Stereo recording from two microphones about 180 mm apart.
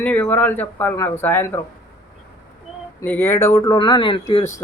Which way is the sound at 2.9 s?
10° left (ahead or behind).